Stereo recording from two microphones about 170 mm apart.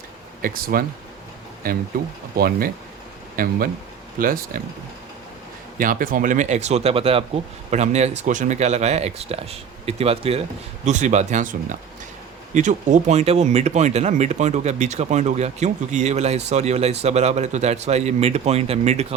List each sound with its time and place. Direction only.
0.4 s speech: 60° right (ahead or behind)
5.7 s speech: 55° right (ahead or behind); by 19.0 s 40° right (ahead or behind)